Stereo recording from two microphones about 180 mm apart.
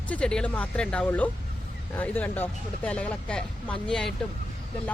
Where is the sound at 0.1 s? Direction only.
5° left (ahead or behind).